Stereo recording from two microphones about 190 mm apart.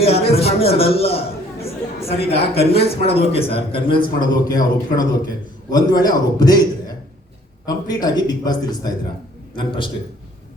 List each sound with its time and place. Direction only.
0.0 s a woman's voice: 30° left (ahead or behind)